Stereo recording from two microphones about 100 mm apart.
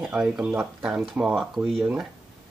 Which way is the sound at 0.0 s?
10° right (ahead or behind).